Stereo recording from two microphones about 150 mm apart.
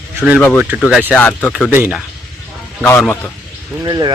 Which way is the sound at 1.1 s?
10° left (ahead or behind).